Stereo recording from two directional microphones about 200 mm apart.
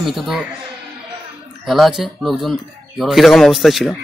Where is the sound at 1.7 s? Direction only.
Centre (ahead or behind).